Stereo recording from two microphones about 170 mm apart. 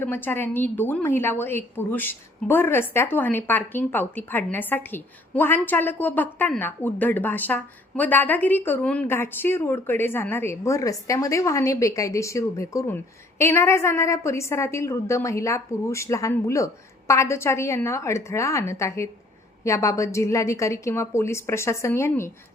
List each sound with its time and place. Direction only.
0.0 s a woman's voice: 10° left (ahead or behind)